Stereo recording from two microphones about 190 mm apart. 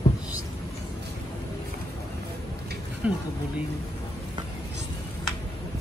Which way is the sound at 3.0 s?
5° right (ahead or behind).